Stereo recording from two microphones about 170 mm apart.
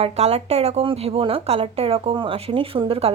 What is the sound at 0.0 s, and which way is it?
A woman's voice, 40° right (ahead or behind).